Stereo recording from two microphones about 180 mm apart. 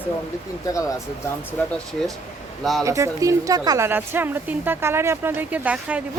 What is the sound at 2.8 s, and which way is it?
A woman's voice, 15° right (ahead or behind).